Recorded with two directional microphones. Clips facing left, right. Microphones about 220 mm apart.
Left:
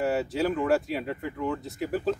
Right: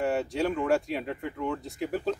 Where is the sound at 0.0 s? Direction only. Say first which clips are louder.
Left 1 dB; 5° left (ahead or behind).